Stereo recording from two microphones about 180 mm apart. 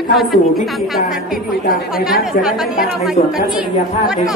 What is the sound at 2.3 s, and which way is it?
Speech, 5° right (ahead or behind).